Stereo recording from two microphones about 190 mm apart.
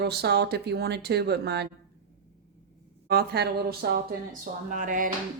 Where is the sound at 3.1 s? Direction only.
55° right (ahead or behind).